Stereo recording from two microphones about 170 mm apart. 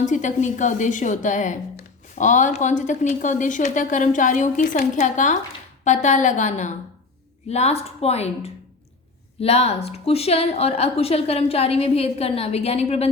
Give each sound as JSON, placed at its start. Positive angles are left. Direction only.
{"t": 0.0, "sound": "a woman's voice", "side_deg": 45}